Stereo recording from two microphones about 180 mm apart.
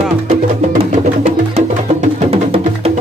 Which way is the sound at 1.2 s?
40° right (ahead or behind).